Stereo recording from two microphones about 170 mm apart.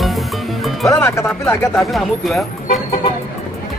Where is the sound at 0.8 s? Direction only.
15° left (ahead or behind).